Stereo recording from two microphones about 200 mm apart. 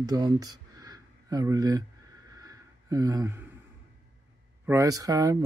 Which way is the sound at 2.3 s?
20° right (ahead or behind).